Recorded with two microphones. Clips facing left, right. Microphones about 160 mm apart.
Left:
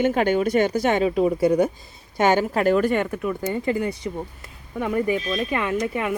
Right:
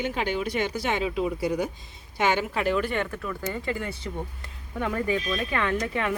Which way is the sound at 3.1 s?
20° left (ahead or behind).